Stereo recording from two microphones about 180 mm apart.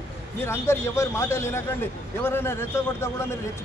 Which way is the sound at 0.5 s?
15° left (ahead or behind).